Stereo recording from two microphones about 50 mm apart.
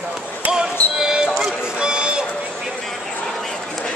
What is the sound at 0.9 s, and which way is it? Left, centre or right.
Basketball bounce, centre.